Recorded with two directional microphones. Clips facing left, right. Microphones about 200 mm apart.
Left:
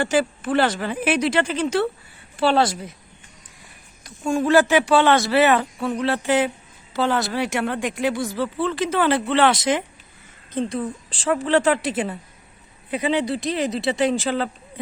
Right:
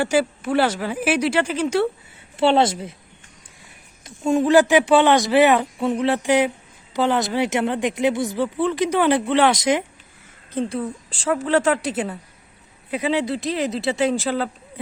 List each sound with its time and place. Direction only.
0.0 s speech: 10° right (ahead or behind)
2.3 s speech: 25° right (ahead or behind)
4.0 s a woman's voice: 25° right (ahead or behind); by 14.5 s centre (ahead or behind)